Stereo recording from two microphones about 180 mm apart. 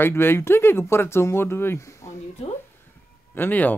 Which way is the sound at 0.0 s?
10° left (ahead or behind).